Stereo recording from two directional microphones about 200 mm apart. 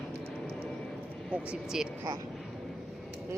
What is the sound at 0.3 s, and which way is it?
Vehicle, 5° left (ahead or behind).